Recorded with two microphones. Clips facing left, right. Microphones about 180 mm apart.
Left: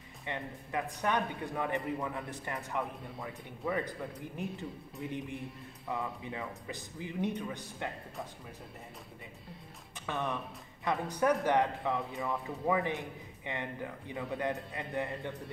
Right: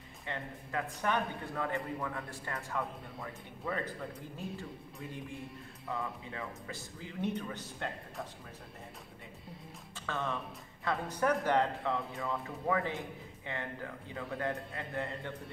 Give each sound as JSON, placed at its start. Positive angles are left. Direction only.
{"t": 0.3, "sound": "a man's voice", "side_deg": 15}
{"t": 5.9, "sound": "a man's voice", "side_deg": 15}
{"t": 9.9, "sound": "a man's voice", "side_deg": 15}